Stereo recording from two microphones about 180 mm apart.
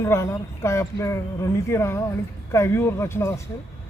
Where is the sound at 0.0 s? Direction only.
15° left (ahead or behind).